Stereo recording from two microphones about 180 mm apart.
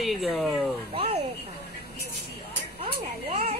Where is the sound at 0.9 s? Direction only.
30° right (ahead or behind).